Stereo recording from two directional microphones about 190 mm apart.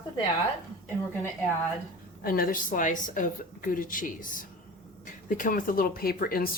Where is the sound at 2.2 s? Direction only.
50° left (ahead or behind).